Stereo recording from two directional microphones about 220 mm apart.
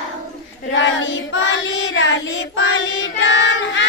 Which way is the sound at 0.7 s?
55° left (ahead or behind).